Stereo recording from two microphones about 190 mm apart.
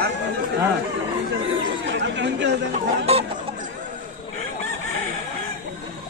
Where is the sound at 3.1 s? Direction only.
35° right (ahead or behind).